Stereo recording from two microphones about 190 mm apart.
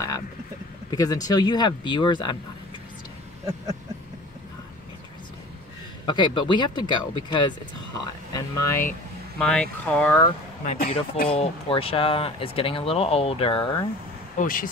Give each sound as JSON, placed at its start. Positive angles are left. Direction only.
{"t": 0.8, "sound": "speech", "side_deg": 20}
{"t": 6.0, "sound": "speech", "side_deg": 25}
{"t": 9.4, "sound": "speech", "side_deg": 5}
{"t": 10.6, "sound": "speech", "side_deg": 40}
{"t": 11.2, "sound": "speech", "side_deg": 30}
{"t": 14.3, "sound": "speech", "side_deg": 45}